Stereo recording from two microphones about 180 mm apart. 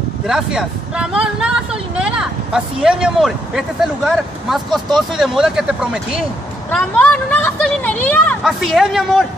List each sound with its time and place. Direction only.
0.3 s speech: 5° right (ahead or behind)
6.7 s speech: 10° left (ahead or behind)
8.5 s speech: centre (ahead or behind)